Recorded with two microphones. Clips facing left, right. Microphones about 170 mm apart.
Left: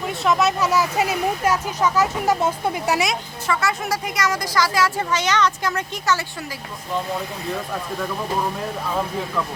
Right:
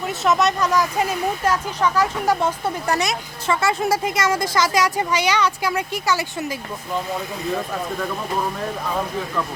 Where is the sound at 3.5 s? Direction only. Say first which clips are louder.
Right 3 dB; 25° right (ahead or behind).